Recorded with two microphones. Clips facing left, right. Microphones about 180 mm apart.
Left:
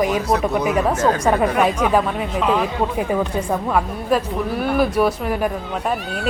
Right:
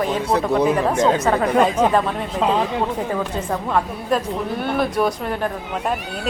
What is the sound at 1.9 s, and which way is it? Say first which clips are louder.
Speech: left 1 dB; 5° left (ahead or behind).